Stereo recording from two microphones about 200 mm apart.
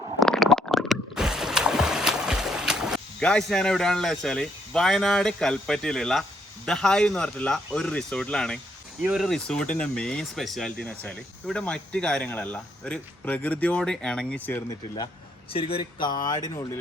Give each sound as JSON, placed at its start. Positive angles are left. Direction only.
{"t": 0.2, "sound": "boat", "side_deg": 0}
{"t": 6.7, "sound": "speech", "side_deg": 5}
{"t": 15.5, "sound": "speech", "side_deg": 25}